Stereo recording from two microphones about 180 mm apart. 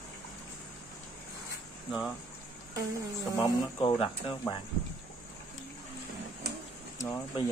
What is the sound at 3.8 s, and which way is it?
Speech, 30° left (ahead or behind).